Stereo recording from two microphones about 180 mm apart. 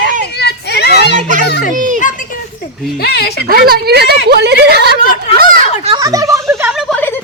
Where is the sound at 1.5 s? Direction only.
65° left (ahead or behind).